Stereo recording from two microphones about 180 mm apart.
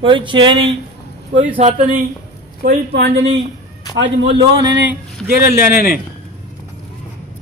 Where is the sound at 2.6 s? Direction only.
70° right (ahead or behind).